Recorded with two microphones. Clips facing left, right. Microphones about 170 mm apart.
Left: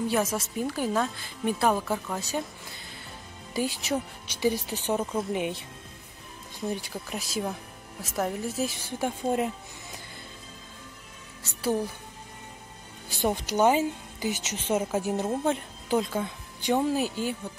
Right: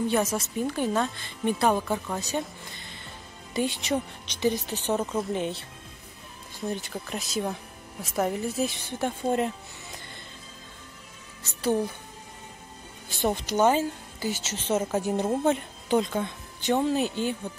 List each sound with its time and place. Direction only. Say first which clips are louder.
0.1 s a woman's voice: right 1 dB; centre (ahead or behind)
3.5 s speech: right 2 dB; 5° left (ahead or behind)
6.7 s a woman's voice: right 1 dB; 10° left (ahead or behind)
13.2 s a woman's voice: even; 10° left (ahead or behind)